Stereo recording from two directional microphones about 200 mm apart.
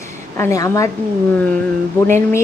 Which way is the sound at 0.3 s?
15° left (ahead or behind).